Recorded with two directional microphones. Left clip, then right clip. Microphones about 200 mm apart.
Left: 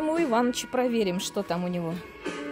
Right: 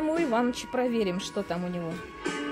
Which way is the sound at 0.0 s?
10° left (ahead or behind).